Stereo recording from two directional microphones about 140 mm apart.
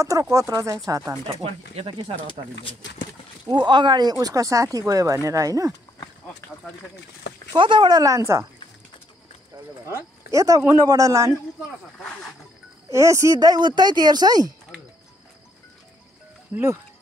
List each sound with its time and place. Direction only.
0.0 s speech: 25° right (ahead or behind)
1.4 s speech: 45° right (ahead or behind)
3.4 s speech: 35° right (ahead or behind)
7.5 s speech: 35° right (ahead or behind)
10.3 s speech: 25° right (ahead or behind)
12.9 s speech: 20° right (ahead or behind)
16.5 s speech: 10° right (ahead or behind)